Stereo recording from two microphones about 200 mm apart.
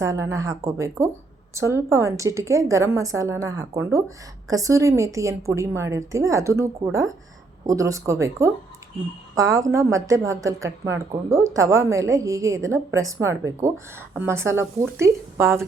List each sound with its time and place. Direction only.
0.0 s a woman's voice: 15° right (ahead or behind)